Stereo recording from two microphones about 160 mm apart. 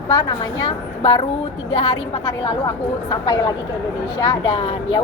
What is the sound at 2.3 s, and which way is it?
Speech, 25° left (ahead or behind).